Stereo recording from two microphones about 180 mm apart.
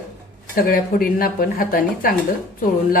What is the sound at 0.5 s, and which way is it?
Speech, 50° left (ahead or behind).